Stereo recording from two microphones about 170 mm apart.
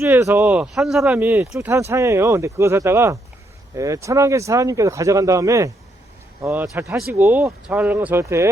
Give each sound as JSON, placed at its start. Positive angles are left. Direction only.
{"t": 0.0, "sound": "speech", "side_deg": -15}